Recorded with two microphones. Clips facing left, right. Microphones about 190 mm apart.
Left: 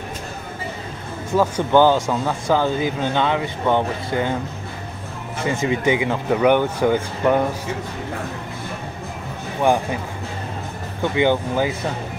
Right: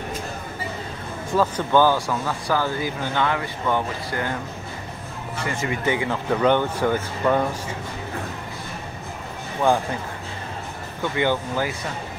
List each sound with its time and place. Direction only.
1.3 s speech: 15° left (ahead or behind)
5.4 s speech: 20° left (ahead or behind)
11.0 s speech: 15° left (ahead or behind)